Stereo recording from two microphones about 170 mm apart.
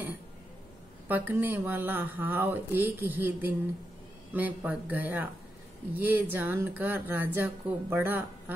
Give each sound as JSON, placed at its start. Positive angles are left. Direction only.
{"t": 1.0, "sound": "speech", "side_deg": -10}